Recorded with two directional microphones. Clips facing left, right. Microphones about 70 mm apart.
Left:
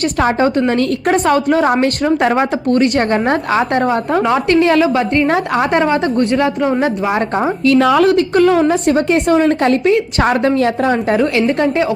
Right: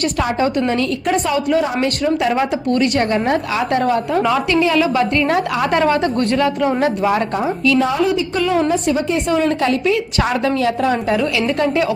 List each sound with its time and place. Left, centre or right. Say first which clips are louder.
0.2 s a woman's voice: left 5 dB; left
2.3 s a woman's voice: left 3 dB; left
4.8 s a woman's voice: left 3 dB; left
7.8 s a woman's voice: left 6 dB; left